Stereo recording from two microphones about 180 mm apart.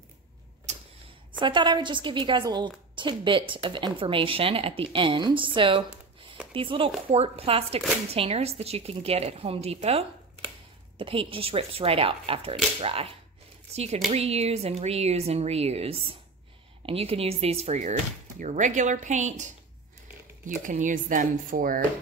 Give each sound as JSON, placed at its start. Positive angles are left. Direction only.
{"t": 0.7, "sound": "a sound", "side_deg": -40}
{"t": 1.4, "sound": "a woman's voice", "side_deg": -25}
{"t": 20.6, "sound": "speech", "side_deg": -45}